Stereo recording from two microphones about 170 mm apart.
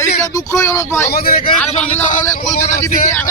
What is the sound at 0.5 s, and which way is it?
Speech, 20° left (ahead or behind).